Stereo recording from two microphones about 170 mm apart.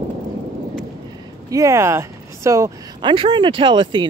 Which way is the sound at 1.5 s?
15° right (ahead or behind).